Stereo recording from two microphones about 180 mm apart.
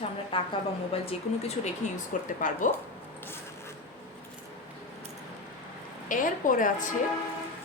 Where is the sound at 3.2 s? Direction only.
15° left (ahead or behind).